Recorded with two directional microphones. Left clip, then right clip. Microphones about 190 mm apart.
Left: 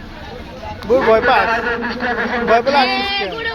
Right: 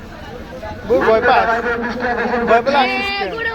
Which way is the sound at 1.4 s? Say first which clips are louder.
Even; 30° right (ahead or behind).